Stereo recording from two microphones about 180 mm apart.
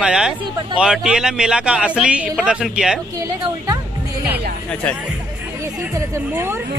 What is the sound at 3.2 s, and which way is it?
Speech, 20° right (ahead or behind).